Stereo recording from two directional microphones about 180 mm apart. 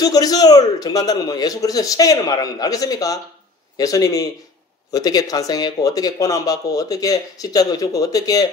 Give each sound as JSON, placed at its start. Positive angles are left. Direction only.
{"t": 0.0, "sound": "speech", "side_deg": 20}